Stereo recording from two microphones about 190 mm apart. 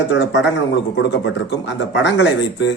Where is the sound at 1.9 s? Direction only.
65° left (ahead or behind).